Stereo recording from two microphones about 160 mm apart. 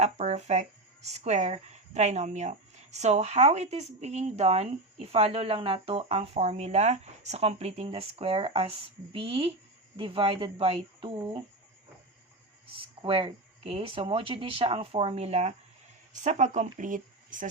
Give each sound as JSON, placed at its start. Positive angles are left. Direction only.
{"t": 0.0, "sound": "speech", "side_deg": -45}
{"t": 12.7, "sound": "speech", "side_deg": -35}